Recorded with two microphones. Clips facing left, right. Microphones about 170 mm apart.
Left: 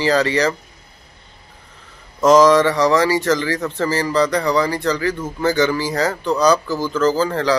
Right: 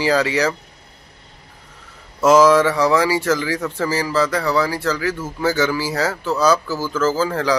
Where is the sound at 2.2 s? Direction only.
5° right (ahead or behind).